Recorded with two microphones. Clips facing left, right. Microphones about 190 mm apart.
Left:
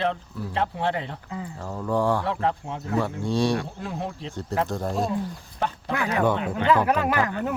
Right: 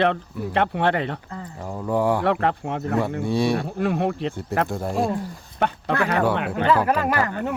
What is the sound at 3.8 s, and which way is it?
Speech, 65° right (ahead or behind).